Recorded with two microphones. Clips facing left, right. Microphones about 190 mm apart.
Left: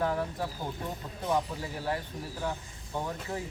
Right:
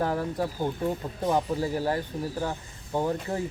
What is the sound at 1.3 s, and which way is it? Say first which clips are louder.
Speech: right 5 dB; 40° right (ahead or behind).